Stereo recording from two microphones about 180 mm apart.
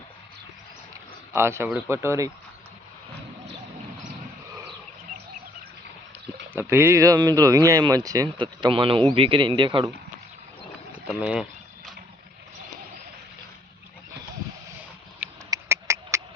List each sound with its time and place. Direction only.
1.3 s speech: 15° right (ahead or behind)
6.6 s speech: 15° right (ahead or behind)
10.9 s speech: 5° right (ahead or behind)
15.4 s a sound: 15° right (ahead or behind)